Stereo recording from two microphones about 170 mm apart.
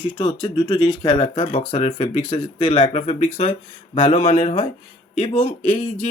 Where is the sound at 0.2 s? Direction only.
25° left (ahead or behind).